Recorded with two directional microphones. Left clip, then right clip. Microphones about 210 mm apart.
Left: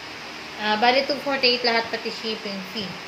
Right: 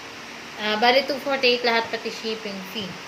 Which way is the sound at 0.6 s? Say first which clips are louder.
Even; 15° right (ahead or behind).